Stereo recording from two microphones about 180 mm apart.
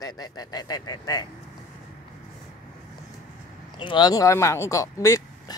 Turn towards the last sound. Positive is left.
turn(degrees=20)  # may be behind; listen again after turning